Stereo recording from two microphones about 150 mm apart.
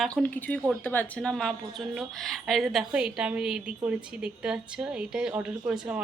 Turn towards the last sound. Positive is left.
turn(degrees=-10)  # may be behind; listen again after turning